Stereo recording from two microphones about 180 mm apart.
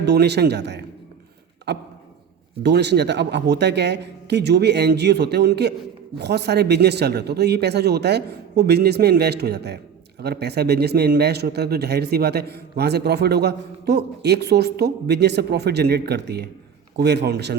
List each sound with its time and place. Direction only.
0.0 s a man's voice: 70° right (ahead or behind)
1.7 s a sound: 70° right (ahead or behind)
2.6 s a man's voice: 70° right (ahead or behind)